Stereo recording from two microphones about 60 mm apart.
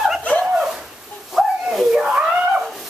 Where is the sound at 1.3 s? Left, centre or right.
Centre.